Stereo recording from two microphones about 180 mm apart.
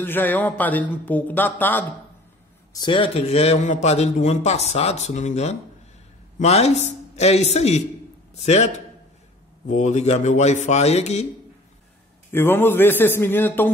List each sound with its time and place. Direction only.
0.0 s speech: 10° left (ahead or behind)
2.7 s a man's voice: 25° left (ahead or behind)
12.3 s speech: 10° left (ahead or behind)